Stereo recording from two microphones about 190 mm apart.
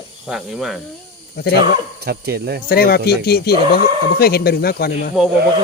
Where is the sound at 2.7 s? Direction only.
55° left (ahead or behind).